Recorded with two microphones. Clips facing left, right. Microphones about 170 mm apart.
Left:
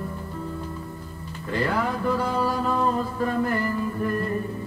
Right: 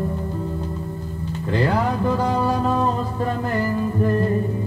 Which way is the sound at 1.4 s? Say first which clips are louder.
Right 4 dB; 25° right (ahead or behind).